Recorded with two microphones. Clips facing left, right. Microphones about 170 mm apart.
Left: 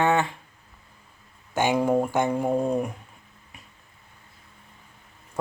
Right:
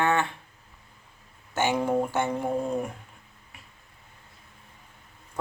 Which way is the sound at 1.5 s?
15° left (ahead or behind).